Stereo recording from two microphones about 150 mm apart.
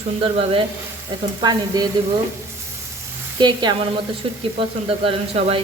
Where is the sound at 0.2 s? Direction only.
35° right (ahead or behind).